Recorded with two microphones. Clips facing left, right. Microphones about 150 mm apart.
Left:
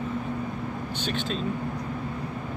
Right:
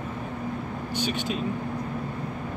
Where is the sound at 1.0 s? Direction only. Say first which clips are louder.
Right 2 dB; 10° right (ahead or behind).